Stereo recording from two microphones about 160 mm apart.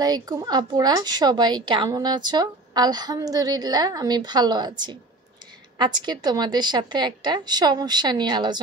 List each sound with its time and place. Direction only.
0.0 s a woman's voice: 25° right (ahead or behind)